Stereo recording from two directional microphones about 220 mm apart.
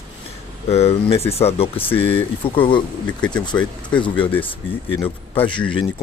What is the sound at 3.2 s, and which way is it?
Speech, 5° left (ahead or behind).